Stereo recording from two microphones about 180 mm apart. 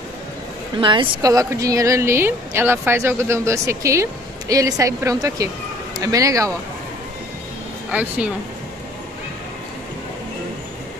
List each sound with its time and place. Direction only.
0.7 s a woman's voice: 25° right (ahead or behind)
7.9 s a woman's voice: 5° right (ahead or behind)